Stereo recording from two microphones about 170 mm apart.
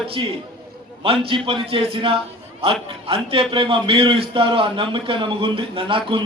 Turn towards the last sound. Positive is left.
turn(degrees=-30)  # may be behind; listen again after turning